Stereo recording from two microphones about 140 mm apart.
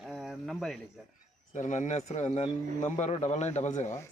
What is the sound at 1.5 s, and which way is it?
A man's voice, 60° left (ahead or behind).